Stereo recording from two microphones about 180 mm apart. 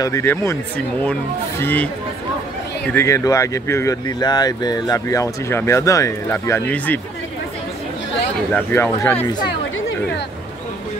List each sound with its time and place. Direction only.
0.0 s speech: 15° left (ahead or behind)
8.5 s speech: 10° left (ahead or behind)